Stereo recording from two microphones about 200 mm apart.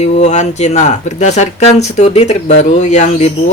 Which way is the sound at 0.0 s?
35° left (ahead or behind).